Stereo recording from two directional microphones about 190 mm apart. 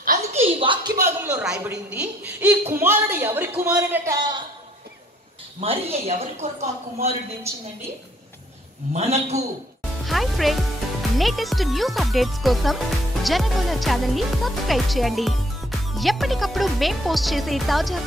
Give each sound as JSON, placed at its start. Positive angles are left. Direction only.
{"t": 0.3, "sound": "a sound", "side_deg": -30}
{"t": 1.2, "sound": "a woman's voice", "side_deg": -5}
{"t": 5.6, "sound": "speech", "side_deg": -30}
{"t": 8.9, "sound": "speech", "side_deg": -35}
{"t": 10.0, "sound": "speech", "side_deg": 0}